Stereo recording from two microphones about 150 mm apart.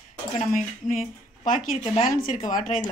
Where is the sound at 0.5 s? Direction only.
65° left (ahead or behind).